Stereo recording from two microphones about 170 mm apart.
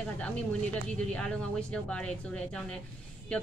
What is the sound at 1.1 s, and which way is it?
Speech, 5° left (ahead or behind).